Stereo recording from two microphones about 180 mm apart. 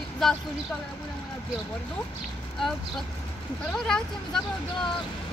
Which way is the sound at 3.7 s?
5° left (ahead or behind).